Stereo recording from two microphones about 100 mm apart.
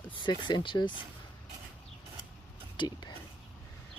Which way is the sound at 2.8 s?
45° left (ahead or behind).